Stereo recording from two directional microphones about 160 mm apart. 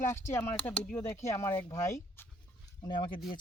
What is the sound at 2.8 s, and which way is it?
Speech, 30° left (ahead or behind).